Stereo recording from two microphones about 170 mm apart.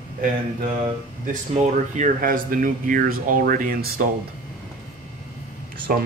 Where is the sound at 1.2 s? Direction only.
50° right (ahead or behind).